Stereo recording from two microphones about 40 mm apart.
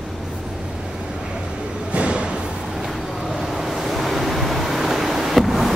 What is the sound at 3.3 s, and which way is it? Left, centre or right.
Waves, centre.